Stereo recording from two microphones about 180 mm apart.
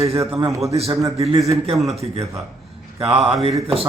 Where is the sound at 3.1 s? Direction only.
35° right (ahead or behind).